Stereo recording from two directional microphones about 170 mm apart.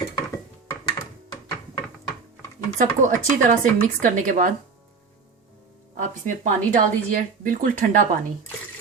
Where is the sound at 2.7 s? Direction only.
50° right (ahead or behind).